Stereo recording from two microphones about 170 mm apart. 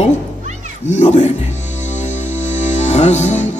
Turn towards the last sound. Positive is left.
turn(degrees=40)  # may be behind; listen again after turning